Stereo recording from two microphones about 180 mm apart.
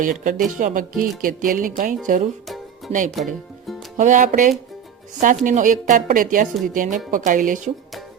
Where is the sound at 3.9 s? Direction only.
45° right (ahead or behind).